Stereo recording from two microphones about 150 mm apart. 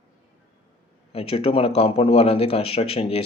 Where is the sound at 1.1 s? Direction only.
40° left (ahead or behind).